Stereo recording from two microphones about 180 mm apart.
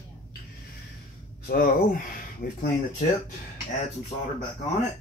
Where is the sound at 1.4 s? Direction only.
50° left (ahead or behind).